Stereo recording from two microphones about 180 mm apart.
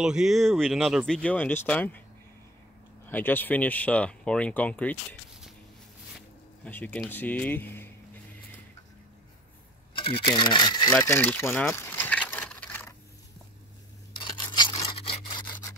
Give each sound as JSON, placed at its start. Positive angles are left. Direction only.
{"t": 0.0, "sound": "speech", "side_deg": -5}
{"t": 3.1, "sound": "speech", "side_deg": 10}
{"t": 6.6, "sound": "speech", "side_deg": 10}
{"t": 9.9, "sound": "speech", "side_deg": 30}
{"t": 14.1, "sound": "rub", "side_deg": 25}